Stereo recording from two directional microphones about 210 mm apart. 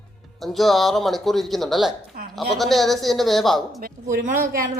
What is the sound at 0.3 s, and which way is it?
Speech, centre (ahead or behind).